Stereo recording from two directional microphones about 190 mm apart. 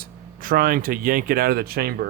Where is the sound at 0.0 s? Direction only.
50° right (ahead or behind).